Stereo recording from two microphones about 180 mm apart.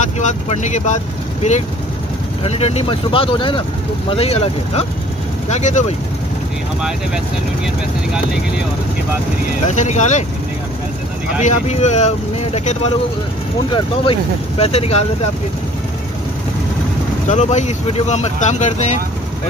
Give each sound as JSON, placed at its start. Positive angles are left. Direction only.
{"t": 0.2, "sound": "speech", "side_deg": 40}
{"t": 9.7, "sound": "speech", "side_deg": 40}
{"t": 11.4, "sound": "speech", "side_deg": 40}
{"t": 14.6, "sound": "speech", "side_deg": 35}
{"t": 17.3, "sound": "speech", "side_deg": 40}